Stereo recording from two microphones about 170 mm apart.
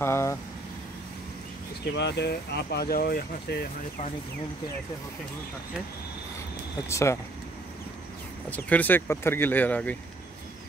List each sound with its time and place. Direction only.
0.0 s speech: 15° left (ahead or behind)
1.9 s speech: 90° left; by 3.6 s 65° left (ahead or behind)
6.9 s speech: 15° left (ahead or behind)
8.5 s speech: 10° left (ahead or behind)